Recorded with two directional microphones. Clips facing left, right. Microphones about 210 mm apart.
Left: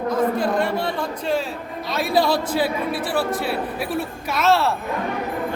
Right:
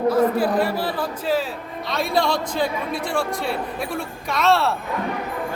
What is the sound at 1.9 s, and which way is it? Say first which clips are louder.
Speech: left 2 dB; 5° left (ahead or behind).